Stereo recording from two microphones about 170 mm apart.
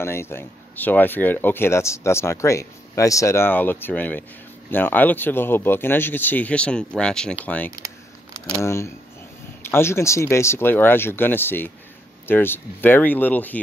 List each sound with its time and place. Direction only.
0.0 s speech: 15° left (ahead or behind)